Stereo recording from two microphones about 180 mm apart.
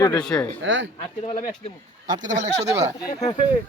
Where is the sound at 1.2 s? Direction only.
35° left (ahead or behind).